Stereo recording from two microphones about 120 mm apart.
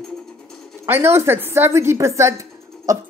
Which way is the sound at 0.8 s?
20° right (ahead or behind).